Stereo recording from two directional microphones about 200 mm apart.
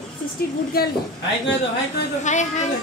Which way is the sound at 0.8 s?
50° left (ahead or behind).